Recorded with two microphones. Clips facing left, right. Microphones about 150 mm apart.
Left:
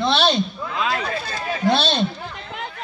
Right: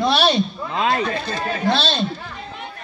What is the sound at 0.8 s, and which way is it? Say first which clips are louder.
Speech: right 4 dB; 30° right (ahead or behind).